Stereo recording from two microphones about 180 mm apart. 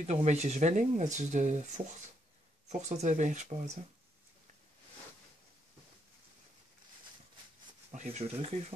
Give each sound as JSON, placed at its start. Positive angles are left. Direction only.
{"t": 0.0, "sound": "speech", "side_deg": -35}
{"t": 7.9, "sound": "speech", "side_deg": -40}